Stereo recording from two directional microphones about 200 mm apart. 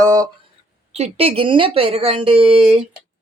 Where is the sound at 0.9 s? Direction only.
30° right (ahead or behind).